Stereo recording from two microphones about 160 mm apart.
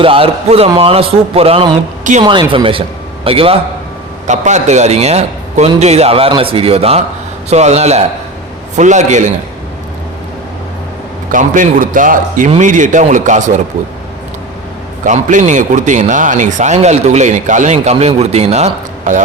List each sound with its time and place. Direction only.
0.0 s a man's voice: 35° right (ahead or behind)
4.3 s a man's voice: 45° right (ahead or behind)
11.3 s a man's voice: 55° right (ahead or behind)
15.0 s a man's voice: 50° right (ahead or behind)